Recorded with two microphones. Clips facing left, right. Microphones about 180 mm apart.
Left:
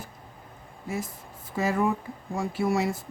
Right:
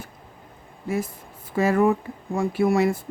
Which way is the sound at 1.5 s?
60° right (ahead or behind).